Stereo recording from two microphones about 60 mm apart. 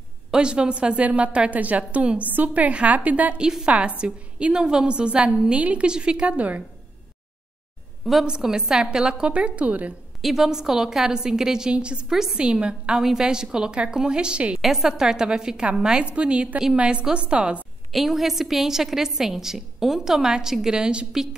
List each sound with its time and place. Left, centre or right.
0.3 s a woman's voice: centre
3.3 s a woman's voice: centre
8.0 s a woman's voice: centre; by 9.9 s right
10.2 s a woman's voice: centre
17.9 s a woman's voice: centre